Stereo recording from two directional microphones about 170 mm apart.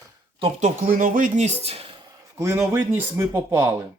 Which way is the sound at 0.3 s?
30° right (ahead or behind).